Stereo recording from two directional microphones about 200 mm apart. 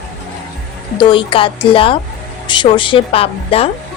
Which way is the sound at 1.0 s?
25° left (ahead or behind).